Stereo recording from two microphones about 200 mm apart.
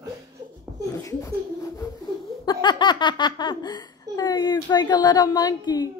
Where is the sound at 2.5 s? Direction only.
20° left (ahead or behind).